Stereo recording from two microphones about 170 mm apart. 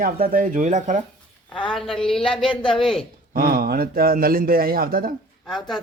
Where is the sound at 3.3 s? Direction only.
60° right (ahead or behind).